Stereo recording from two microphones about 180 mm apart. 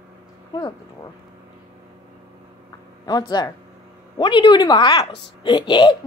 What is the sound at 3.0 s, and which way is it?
Speech, 20° left (ahead or behind).